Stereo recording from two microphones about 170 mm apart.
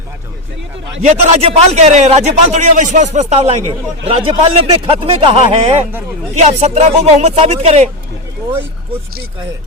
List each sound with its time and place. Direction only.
1.0 s a man's voice: 40° right (ahead or behind)